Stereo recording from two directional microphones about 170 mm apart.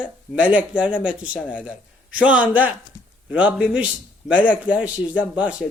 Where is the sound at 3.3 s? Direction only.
5° right (ahead or behind).